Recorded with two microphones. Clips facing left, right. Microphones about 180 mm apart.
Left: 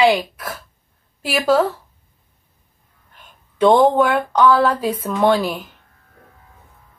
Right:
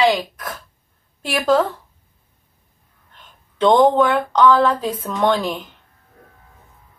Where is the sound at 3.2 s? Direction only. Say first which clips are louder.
Left 2 dB; 10° left (ahead or behind).